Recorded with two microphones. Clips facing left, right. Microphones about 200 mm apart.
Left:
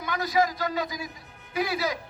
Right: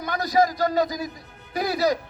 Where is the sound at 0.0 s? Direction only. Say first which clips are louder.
Right 4 dB; 40° right (ahead or behind).